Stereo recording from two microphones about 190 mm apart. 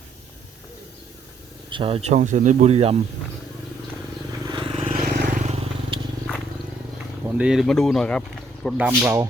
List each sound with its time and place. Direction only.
1.7 s speech: 30° right (ahead or behind)
4.3 s vehicle: 20° right (ahead or behind)
4.9 s vehicle: 45° right (ahead or behind)
7.3 s speech: 5° right (ahead or behind)
8.6 s speech: 5° right (ahead or behind)